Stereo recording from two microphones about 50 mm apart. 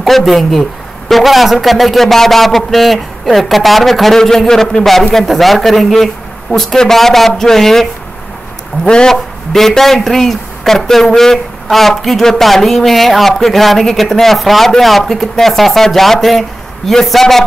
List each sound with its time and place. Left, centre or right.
0.0 s a man's voice: centre
8.8 s a man's voice: centre
9.1 s speech: centre